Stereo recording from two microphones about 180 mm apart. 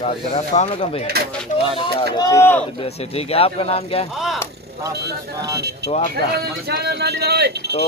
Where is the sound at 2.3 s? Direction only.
15° left (ahead or behind).